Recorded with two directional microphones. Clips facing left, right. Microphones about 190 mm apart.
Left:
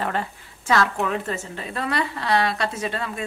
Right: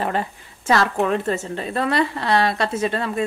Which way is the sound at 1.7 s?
30° right (ahead or behind).